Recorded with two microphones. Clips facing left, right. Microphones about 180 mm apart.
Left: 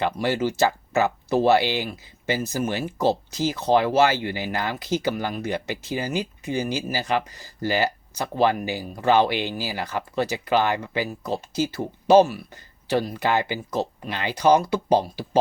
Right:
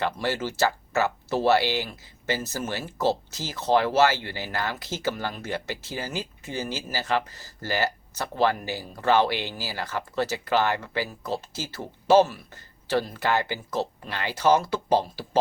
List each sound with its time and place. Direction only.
0.0 s speech: 15° left (ahead or behind)